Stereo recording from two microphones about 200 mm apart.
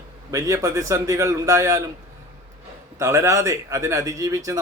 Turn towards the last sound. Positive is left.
turn(degrees=-15)  # may be behind; listen again after turning